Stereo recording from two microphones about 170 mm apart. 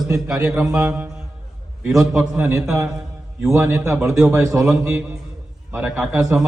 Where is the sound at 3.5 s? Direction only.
15° right (ahead or behind).